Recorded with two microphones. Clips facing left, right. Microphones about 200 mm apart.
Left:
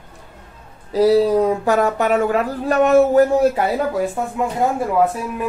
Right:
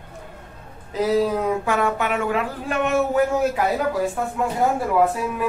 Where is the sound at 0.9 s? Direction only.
35° left (ahead or behind).